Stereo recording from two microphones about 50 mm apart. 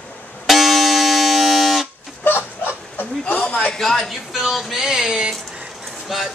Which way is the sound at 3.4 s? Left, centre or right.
Centre.